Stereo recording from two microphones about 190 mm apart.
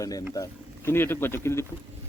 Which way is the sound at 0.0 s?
20° left (ahead or behind).